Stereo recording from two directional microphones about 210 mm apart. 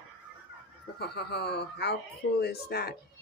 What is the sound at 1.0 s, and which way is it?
Speech, 50° left (ahead or behind).